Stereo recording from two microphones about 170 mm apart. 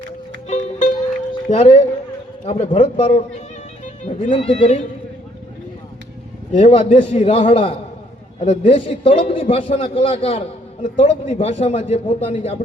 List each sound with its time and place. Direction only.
0.4 s music: 45° left (ahead or behind)
1.5 s a man's voice: 35° left (ahead or behind)
4.2 s a man's voice: 35° left (ahead or behind)
6.5 s a man's voice: 35° left (ahead or behind)